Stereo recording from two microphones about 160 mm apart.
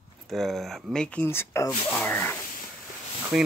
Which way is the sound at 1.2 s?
15° left (ahead or behind).